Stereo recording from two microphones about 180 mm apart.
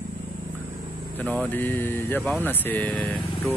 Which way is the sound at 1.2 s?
10° left (ahead or behind).